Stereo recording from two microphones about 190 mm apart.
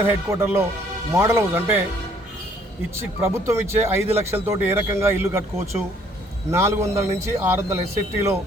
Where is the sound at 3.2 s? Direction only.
15° right (ahead or behind).